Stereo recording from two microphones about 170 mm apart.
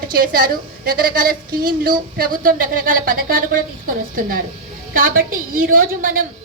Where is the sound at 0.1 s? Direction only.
60° right (ahead or behind).